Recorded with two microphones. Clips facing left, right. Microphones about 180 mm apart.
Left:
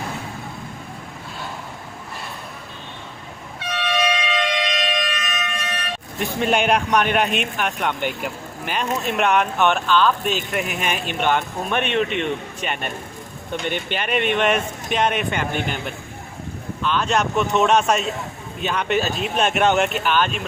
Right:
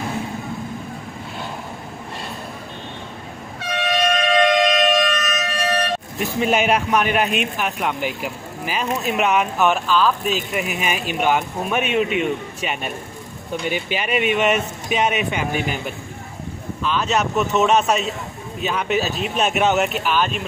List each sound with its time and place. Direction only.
3.7 s a sound: 45° right (ahead or behind)
6.1 s speech: 5° right (ahead or behind)
16.8 s speech: 5° right (ahead or behind)